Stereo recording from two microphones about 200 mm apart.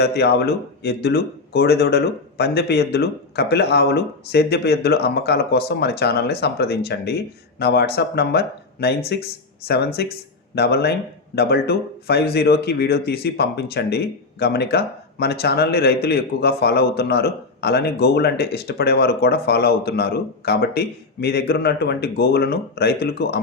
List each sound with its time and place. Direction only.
0.0 s speech: 55° left (ahead or behind)